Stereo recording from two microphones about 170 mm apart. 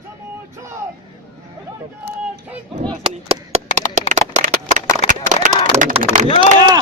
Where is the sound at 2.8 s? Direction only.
35° right (ahead or behind).